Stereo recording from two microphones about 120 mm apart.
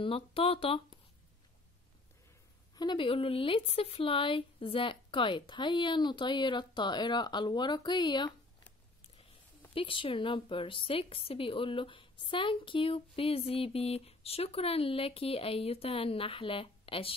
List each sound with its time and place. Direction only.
0.0 s a woman's voice: 50° left (ahead or behind)
2.7 s speech: 35° left (ahead or behind)
9.8 s a woman's voice: 45° left (ahead or behind)